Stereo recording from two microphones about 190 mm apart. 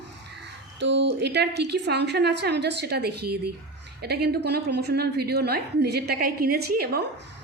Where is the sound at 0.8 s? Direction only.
70° right (ahead or behind).